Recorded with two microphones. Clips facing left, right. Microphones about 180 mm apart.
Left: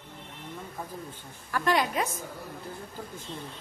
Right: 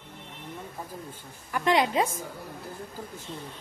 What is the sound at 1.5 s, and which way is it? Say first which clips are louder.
Speech: right 2 dB; 20° right (ahead or behind).